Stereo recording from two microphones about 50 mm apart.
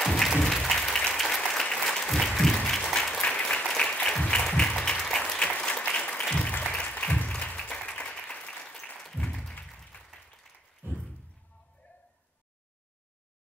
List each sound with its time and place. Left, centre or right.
0.0 s music: centre
0.4 s applause: centre
3.2 s applause: centre
3.9 s applause: left
8.9 s applause: centre
9.9 s applause: left